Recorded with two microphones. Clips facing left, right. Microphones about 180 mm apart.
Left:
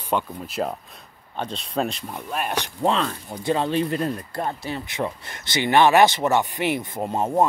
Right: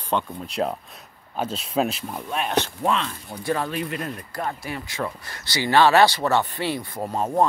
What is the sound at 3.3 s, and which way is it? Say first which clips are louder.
Speech: left 3 dB; 20° left (ahead or behind).